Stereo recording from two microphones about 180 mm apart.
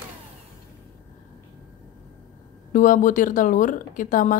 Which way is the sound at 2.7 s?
45° left (ahead or behind).